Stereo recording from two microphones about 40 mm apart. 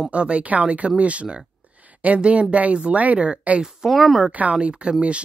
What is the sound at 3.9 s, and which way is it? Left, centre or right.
Speech, centre.